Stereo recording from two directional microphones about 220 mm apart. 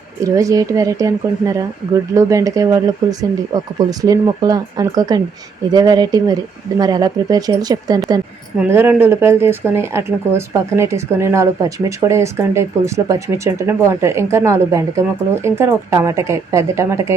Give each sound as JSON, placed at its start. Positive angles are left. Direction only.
{"t": 0.3, "sound": "speech", "side_deg": -15}